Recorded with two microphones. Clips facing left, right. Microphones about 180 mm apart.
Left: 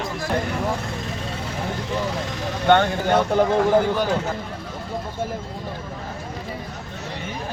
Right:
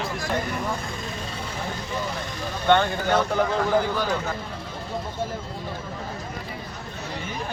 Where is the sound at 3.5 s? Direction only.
20° left (ahead or behind).